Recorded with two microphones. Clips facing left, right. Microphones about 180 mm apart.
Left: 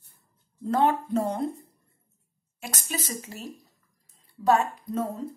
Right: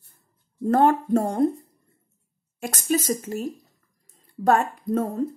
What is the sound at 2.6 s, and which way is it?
A woman's voice, 45° right (ahead or behind).